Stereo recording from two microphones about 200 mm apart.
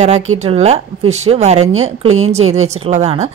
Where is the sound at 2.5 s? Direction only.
35° right (ahead or behind).